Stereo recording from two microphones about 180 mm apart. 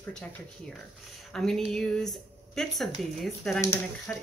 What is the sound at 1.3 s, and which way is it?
A woman's voice, 5° left (ahead or behind).